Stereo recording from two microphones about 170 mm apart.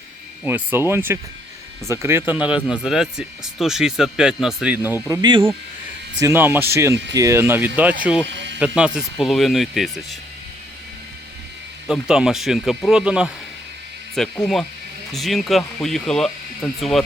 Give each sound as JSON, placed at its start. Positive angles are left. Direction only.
{"t": 0.4, "sound": "speech", "side_deg": -10}
{"t": 5.0, "sound": "speech", "side_deg": -20}
{"t": 6.1, "sound": "speech", "side_deg": -15}
{"t": 8.3, "sound": "a sound", "side_deg": -90}
{"t": 8.5, "sound": "speech", "side_deg": -5}
{"t": 11.9, "sound": "speech", "side_deg": -5}